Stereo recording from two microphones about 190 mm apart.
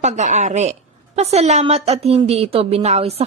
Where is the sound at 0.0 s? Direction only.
40° right (ahead or behind).